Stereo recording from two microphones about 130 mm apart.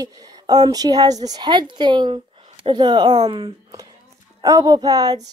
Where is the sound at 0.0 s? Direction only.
30° right (ahead or behind).